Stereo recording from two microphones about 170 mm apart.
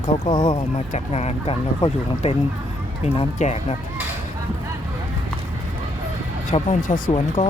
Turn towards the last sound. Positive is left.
turn(degrees=40)  # may be behind; listen again after turning